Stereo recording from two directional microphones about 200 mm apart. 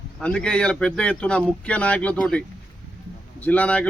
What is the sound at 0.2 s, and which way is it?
Speech, 5° left (ahead or behind).